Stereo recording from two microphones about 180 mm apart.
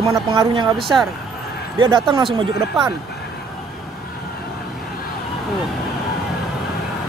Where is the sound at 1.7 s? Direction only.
25° right (ahead or behind).